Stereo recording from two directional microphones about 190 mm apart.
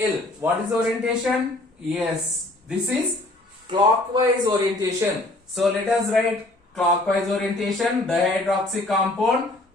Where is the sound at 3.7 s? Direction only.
25° right (ahead or behind).